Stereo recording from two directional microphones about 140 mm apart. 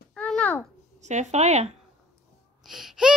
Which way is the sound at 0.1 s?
5° left (ahead or behind).